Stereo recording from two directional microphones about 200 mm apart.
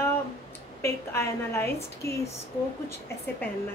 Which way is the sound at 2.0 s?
50° left (ahead or behind).